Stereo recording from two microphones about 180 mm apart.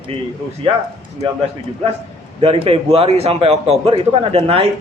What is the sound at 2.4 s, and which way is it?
A man's voice, 30° right (ahead or behind).